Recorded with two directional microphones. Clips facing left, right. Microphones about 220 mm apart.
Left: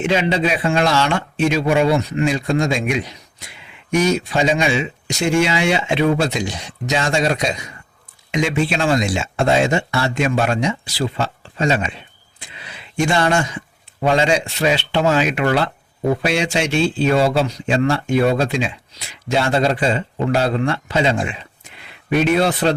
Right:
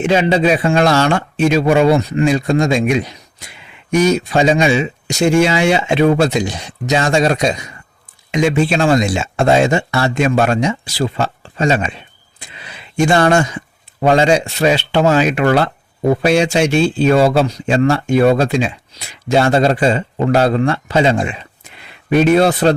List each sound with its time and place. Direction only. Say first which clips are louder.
0.0 s a man's voice: right 5 dB; 40° right (ahead or behind)
4.3 s speech: right 5 dB; 45° right (ahead or behind)
13.1 s a man's voice: right 6 dB; 45° right (ahead or behind)